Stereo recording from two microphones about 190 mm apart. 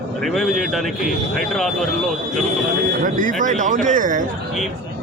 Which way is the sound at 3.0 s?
45° right (ahead or behind).